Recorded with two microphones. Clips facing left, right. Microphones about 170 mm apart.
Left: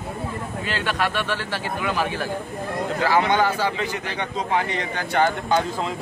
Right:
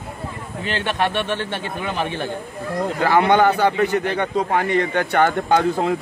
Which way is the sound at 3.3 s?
60° right (ahead or behind).